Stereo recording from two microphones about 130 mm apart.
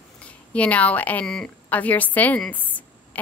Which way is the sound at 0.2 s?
10° left (ahead or behind).